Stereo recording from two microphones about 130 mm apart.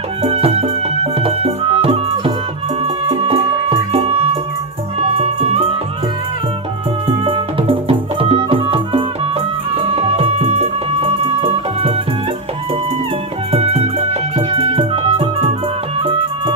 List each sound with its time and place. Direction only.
0.2 s music: 50° right (ahead or behind)
7.1 s music: 45° right (ahead or behind)
13.5 s music: 50° right (ahead or behind)